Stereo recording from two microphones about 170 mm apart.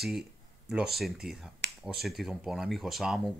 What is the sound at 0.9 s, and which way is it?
Speech, centre (ahead or behind).